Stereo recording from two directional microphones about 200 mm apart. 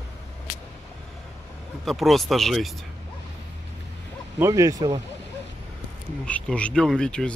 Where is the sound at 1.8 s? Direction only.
Centre (ahead or behind).